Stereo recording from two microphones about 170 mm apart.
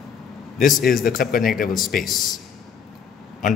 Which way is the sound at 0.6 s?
60° left (ahead or behind).